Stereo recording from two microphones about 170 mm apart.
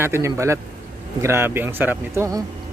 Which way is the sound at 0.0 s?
15° right (ahead or behind).